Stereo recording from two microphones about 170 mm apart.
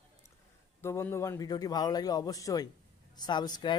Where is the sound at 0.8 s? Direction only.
15° left (ahead or behind).